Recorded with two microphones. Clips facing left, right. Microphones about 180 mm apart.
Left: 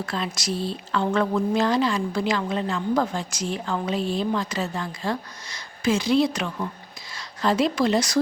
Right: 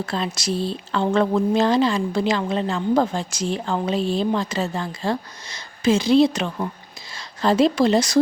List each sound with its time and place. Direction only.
0.0 s speech: 25° right (ahead or behind)